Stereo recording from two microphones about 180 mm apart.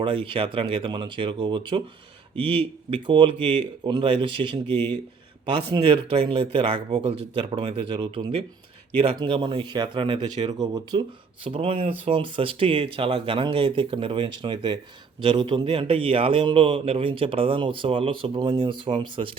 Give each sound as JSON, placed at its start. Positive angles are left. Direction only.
{"t": 0.0, "sound": "a man's voice", "side_deg": -30}
{"t": 4.6, "sound": "speech", "side_deg": 10}
{"t": 5.7, "sound": "a man's voice", "side_deg": -30}